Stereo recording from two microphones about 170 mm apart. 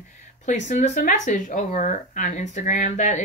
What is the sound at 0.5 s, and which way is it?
Speech, 45° left (ahead or behind).